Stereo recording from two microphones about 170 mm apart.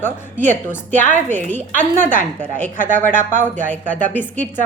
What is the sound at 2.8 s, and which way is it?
Speech, 50° right (ahead or behind).